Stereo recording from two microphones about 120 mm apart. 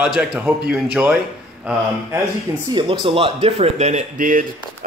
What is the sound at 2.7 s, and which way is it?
Speech, 40° right (ahead or behind).